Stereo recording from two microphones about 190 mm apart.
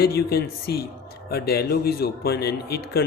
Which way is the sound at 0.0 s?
55° left (ahead or behind).